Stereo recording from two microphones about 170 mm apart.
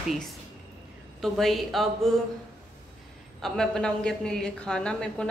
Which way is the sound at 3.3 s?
5° left (ahead or behind).